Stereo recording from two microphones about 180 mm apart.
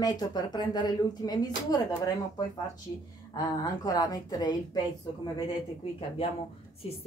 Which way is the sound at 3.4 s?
20° left (ahead or behind).